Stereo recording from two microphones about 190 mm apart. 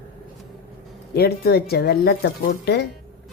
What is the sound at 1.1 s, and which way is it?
Speech, 55° left (ahead or behind).